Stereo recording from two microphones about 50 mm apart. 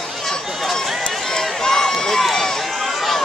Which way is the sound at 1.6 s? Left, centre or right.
Centre.